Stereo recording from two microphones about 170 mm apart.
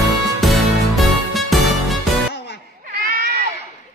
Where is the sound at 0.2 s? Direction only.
Centre (ahead or behind).